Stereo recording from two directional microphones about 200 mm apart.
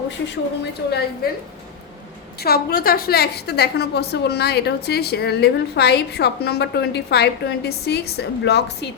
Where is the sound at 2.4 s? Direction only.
50° left (ahead or behind).